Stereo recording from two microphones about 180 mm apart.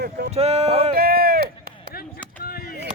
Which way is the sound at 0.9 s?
55° right (ahead or behind).